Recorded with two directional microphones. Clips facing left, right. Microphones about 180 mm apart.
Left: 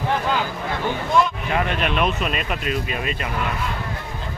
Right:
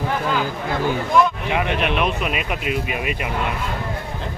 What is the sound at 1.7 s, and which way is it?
Speech, 60° right (ahead or behind).